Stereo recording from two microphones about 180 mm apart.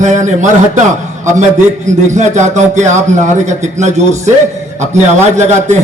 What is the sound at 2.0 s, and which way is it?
A man's voice, 40° right (ahead or behind).